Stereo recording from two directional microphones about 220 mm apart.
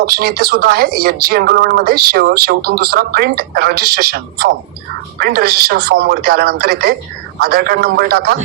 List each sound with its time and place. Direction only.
0.0 s speech: 45° right (ahead or behind)